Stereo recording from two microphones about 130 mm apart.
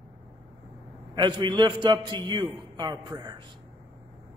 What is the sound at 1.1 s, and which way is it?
A man's voice, 35° right (ahead or behind).